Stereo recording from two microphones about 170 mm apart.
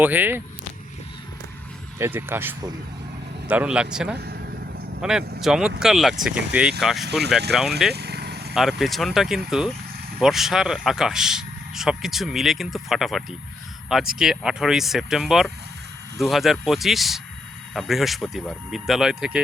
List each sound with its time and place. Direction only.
0.0 s speech: 10° right (ahead or behind)
2.0 s speech: 10° right (ahead or behind)
4.2 s vehicle: 70° right (ahead or behind)
5.4 s speech: 5° right (ahead or behind)
7.0 s speech: 75° right (ahead or behind)
7.5 s speech: 5° right (ahead or behind)
7.9 s vehicle: 75° right (ahead or behind)
8.5 s speech: centre (ahead or behind)